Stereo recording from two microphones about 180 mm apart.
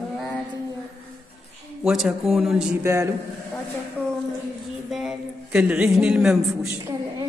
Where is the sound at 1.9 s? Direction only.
Centre (ahead or behind).